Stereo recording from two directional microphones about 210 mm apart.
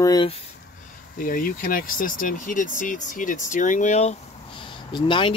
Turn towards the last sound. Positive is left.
turn(degrees=25)  # may be behind; listen again after turning